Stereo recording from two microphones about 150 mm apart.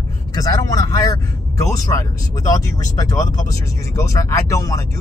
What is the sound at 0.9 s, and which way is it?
Speech, 20° left (ahead or behind).